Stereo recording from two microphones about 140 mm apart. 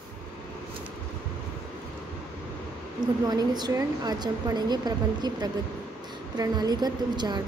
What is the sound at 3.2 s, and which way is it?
A woman's voice, 30° right (ahead or behind).